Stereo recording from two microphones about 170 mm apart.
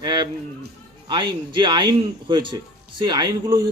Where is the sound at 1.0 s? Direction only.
25° right (ahead or behind).